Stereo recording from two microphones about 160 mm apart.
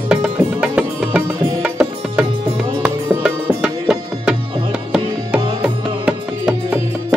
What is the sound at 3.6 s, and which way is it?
Tabla, 5° right (ahead or behind).